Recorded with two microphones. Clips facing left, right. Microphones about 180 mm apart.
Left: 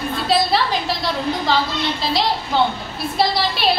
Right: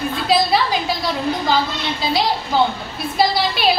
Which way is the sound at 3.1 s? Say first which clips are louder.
Right 2 dB; centre (ahead or behind).